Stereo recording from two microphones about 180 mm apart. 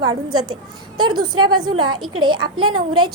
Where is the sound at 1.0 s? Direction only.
25° right (ahead or behind).